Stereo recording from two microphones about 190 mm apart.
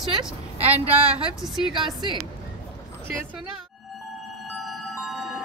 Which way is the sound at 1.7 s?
25° right (ahead or behind).